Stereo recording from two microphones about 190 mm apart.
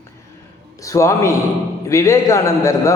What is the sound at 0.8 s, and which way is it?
A man's voice, 15° left (ahead or behind).